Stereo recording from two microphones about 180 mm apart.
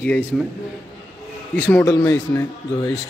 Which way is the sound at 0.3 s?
Centre (ahead or behind).